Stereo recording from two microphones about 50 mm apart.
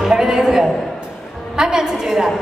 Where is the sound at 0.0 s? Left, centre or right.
Centre.